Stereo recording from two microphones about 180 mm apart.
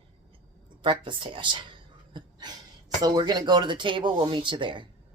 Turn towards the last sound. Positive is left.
turn(degrees=-25)  # may be behind; listen again after turning